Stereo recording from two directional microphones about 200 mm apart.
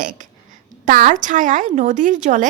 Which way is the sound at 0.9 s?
40° right (ahead or behind).